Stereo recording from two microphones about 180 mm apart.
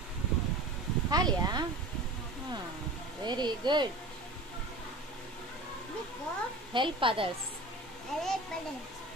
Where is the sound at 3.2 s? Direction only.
25° right (ahead or behind).